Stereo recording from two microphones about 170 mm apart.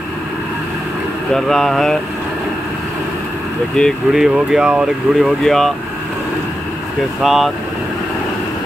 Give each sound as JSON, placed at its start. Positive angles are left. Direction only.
{"t": 1.3, "sound": "speech", "side_deg": 0}
{"t": 3.7, "sound": "speech", "side_deg": 0}
{"t": 7.2, "sound": "speech", "side_deg": 0}